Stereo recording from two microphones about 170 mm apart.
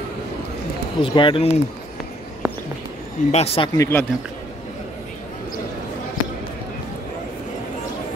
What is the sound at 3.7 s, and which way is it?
Speech, 15° left (ahead or behind).